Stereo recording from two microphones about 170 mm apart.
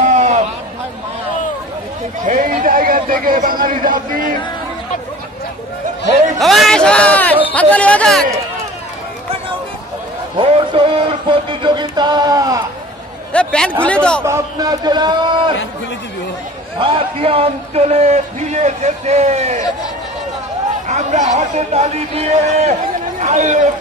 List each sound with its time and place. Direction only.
0.0 s a sound: 45° right (ahead or behind)
2.2 s a man's voice: 50° right (ahead or behind)
6.4 s a sound: centre (ahead or behind)
7.5 s speech: 10° left (ahead or behind)
10.3 s music: 30° right (ahead or behind)
13.3 s a sound: 5° left (ahead or behind)
13.8 s speech: 5° left (ahead or behind)
14.2 s a man's voice: 20° right (ahead or behind)
16.7 s a man's voice: 30° right (ahead or behind)
20.8 s speech: 45° right (ahead or behind)